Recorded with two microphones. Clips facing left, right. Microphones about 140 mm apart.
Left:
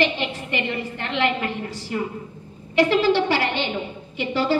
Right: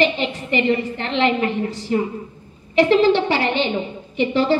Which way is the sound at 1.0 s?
20° right (ahead or behind).